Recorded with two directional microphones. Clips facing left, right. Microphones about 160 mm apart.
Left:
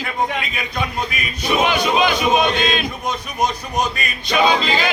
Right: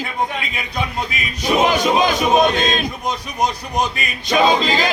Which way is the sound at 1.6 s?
40° right (ahead or behind).